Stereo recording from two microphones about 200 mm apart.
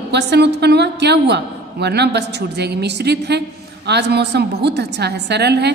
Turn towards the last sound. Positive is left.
turn(degrees=-55)  # may be behind; listen again after turning